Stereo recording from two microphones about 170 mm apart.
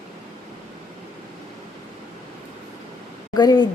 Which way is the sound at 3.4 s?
25° left (ahead or behind).